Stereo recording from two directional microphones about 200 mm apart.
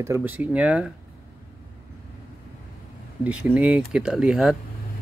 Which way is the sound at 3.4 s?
5° right (ahead or behind).